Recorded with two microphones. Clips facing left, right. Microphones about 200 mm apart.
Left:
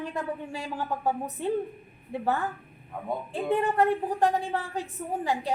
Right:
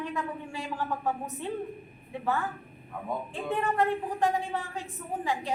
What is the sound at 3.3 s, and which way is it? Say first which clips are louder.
A woman's voice: left 4 dB; 35° left (ahead or behind).